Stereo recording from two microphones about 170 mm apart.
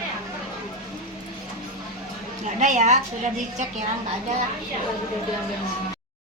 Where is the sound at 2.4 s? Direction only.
45° right (ahead or behind).